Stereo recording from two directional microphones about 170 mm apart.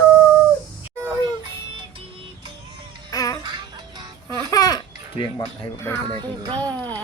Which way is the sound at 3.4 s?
25° right (ahead or behind).